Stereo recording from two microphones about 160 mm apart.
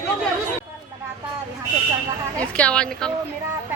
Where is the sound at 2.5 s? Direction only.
5° left (ahead or behind).